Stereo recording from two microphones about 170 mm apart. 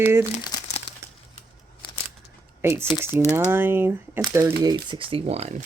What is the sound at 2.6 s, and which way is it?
Speech, 15° right (ahead or behind).